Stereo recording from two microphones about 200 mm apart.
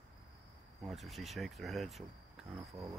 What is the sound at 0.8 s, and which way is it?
Speech, centre (ahead or behind).